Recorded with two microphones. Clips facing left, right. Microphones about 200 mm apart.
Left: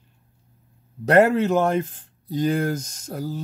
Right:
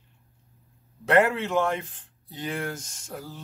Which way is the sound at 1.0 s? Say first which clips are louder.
Left 5 dB; 40° left (ahead or behind).